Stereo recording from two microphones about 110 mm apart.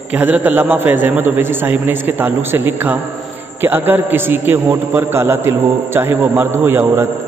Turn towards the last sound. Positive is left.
turn(degrees=-20)  # may be behind; listen again after turning